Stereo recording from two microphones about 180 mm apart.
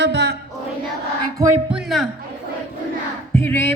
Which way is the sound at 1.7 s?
5° right (ahead or behind).